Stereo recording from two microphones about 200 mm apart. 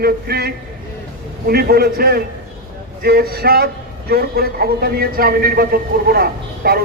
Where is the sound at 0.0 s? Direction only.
50° right (ahead or behind).